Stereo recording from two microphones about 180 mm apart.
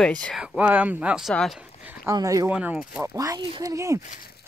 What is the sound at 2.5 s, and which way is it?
Speech, 5° right (ahead or behind).